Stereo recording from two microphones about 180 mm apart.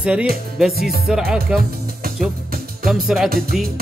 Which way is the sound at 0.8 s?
60° right (ahead or behind).